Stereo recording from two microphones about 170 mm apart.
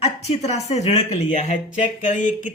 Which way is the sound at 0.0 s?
40° left (ahead or behind).